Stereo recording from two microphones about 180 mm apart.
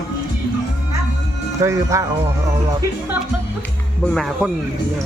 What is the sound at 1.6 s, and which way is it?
Speech, 15° right (ahead or behind).